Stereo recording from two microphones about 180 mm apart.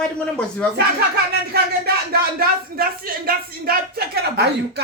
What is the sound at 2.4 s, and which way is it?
Speech, 55° right (ahead or behind).